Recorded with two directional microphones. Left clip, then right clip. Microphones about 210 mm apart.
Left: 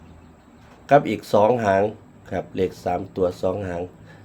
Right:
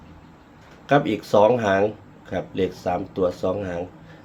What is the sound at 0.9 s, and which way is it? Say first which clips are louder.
Speech: left 2 dB; 15° left (ahead or behind).